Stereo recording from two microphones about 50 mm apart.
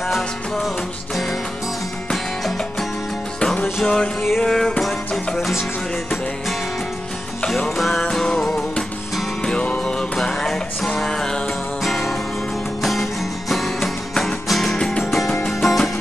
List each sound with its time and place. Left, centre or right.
3.8 s music: centre
4.2 s music: centre
7.4 s music: centre
8.0 s music: centre
14.8 s music: centre
15.0 s music: centre